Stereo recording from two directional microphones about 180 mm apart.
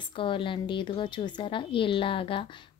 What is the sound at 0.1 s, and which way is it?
A woman's voice, 30° left (ahead or behind).